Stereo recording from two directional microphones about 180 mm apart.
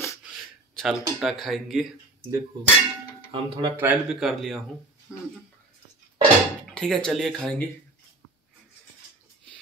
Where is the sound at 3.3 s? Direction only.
25° right (ahead or behind).